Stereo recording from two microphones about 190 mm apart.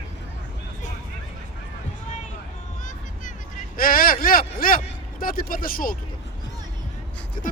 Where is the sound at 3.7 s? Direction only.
50° left (ahead or behind).